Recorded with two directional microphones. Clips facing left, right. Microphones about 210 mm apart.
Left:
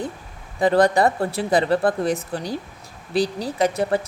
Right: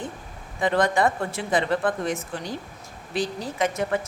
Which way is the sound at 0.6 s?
35° left (ahead or behind).